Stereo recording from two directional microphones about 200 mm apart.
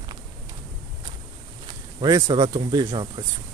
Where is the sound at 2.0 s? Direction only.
20° right (ahead or behind).